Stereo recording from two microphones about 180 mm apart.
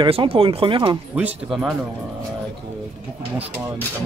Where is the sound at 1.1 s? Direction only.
5° right (ahead or behind).